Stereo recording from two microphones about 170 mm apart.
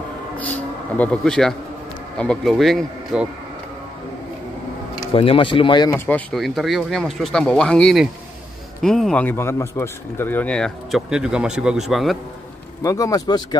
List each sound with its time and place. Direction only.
0.9 s speech: 5° left (ahead or behind)
5.1 s speech: 35° left (ahead or behind)
5.9 s speech: 10° left (ahead or behind)
12.8 s speech: 20° left (ahead or behind)